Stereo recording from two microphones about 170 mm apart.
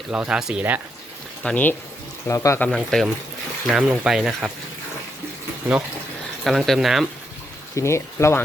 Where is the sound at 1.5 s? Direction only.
10° left (ahead or behind).